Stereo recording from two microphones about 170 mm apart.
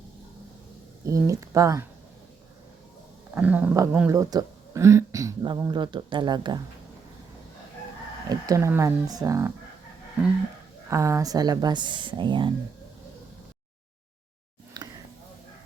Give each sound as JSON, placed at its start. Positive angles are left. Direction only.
{"t": 1.0, "sound": "speech", "side_deg": -20}
{"t": 3.3, "sound": "speech", "side_deg": -10}
{"t": 8.3, "sound": "speech", "side_deg": -20}
{"t": 10.8, "sound": "speech", "side_deg": -15}
{"t": 14.8, "sound": "a sound", "side_deg": -25}